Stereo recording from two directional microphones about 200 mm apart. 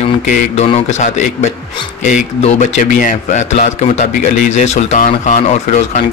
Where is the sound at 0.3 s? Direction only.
40° left (ahead or behind).